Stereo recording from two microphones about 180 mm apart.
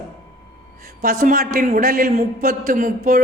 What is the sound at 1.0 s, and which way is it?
Speech, 50° right (ahead or behind).